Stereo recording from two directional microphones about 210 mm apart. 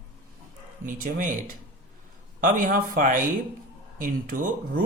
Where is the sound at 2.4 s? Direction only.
40° right (ahead or behind).